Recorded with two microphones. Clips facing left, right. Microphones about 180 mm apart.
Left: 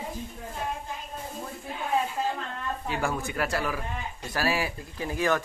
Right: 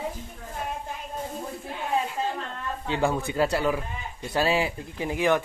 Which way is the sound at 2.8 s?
25° right (ahead or behind).